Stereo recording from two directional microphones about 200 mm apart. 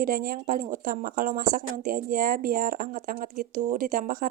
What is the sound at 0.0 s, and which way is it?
A woman's voice, 45° right (ahead or behind).